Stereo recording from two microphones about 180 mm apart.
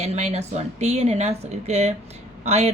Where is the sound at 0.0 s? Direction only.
35° right (ahead or behind).